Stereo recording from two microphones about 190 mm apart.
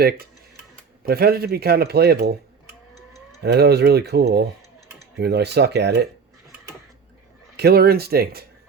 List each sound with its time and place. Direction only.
1.0 s a man's voice: 55° right (ahead or behind)
3.4 s a man's voice: 60° right (ahead or behind)
7.5 s a man's voice: 55° right (ahead or behind)